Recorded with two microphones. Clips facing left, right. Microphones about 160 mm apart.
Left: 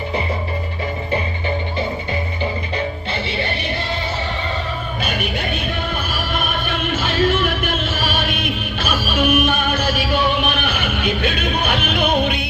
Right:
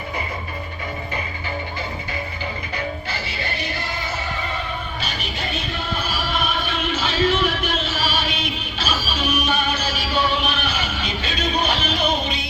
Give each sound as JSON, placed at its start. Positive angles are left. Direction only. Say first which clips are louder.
{"t": 2.4, "sound": "music", "louder": "left 6 dB", "side_deg": 25}
{"t": 5.0, "sound": "music", "louder": "left 6 dB", "side_deg": 55}